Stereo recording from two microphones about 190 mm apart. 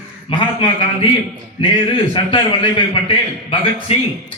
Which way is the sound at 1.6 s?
25° left (ahead or behind).